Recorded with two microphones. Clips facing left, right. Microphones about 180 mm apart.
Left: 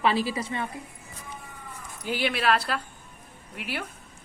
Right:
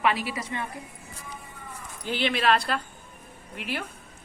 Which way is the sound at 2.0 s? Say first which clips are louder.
Right 1 dB; 10° left (ahead or behind).